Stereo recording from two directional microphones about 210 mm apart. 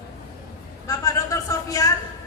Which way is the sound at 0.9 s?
15° left (ahead or behind).